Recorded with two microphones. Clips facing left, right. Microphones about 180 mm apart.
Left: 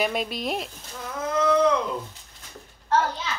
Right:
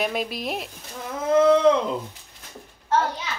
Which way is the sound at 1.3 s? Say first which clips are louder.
Right 5 dB; 25° right (ahead or behind).